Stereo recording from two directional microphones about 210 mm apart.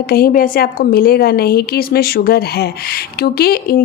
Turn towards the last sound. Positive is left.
turn(degrees=45)  # may be behind; listen again after turning